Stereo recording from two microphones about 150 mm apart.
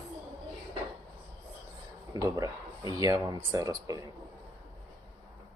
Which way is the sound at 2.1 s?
25° right (ahead or behind).